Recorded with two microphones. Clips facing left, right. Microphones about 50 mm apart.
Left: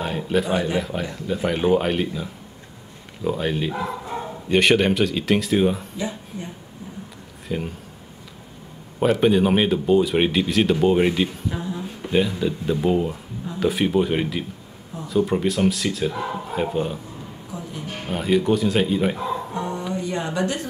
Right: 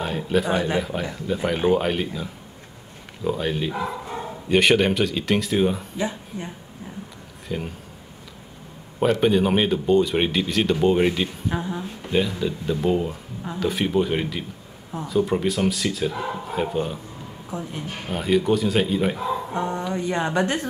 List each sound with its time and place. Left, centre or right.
0.0 s speech: centre
3.3 s speech: centre
5.9 s speech: right
7.4 s speech: centre
9.0 s speech: centre
11.4 s a sound: right
11.8 s speech: centre
17.5 s a sound: right
17.8 s speech: centre
19.5 s a sound: right
19.9 s speech: right